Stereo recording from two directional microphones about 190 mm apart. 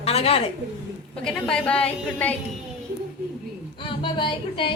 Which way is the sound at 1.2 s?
5° left (ahead or behind).